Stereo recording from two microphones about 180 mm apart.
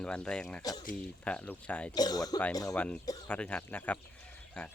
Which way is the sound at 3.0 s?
20° left (ahead or behind).